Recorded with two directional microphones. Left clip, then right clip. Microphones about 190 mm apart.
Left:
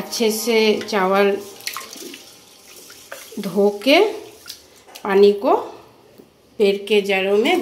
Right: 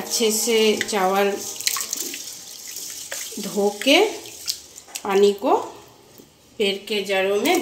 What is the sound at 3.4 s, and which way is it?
Speech, 25° left (ahead or behind).